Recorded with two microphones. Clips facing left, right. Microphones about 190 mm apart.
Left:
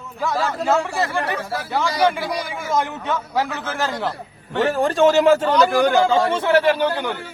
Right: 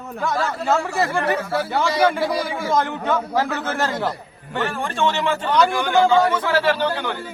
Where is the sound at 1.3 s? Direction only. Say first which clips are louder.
Right 2 dB; 30° right (ahead or behind).